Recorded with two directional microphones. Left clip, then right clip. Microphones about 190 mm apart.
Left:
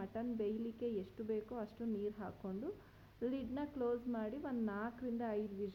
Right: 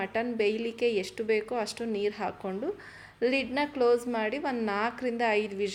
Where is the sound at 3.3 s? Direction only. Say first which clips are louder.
Right 15 dB; 10° right (ahead or behind).